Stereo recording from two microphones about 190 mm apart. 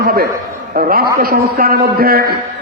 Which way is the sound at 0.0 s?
50° right (ahead or behind).